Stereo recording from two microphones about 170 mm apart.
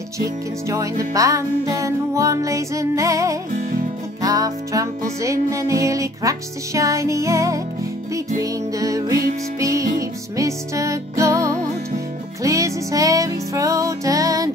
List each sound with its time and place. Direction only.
0.2 s music: 20° right (ahead or behind)